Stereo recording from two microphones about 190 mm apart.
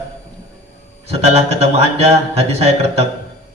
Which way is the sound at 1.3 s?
35° right (ahead or behind).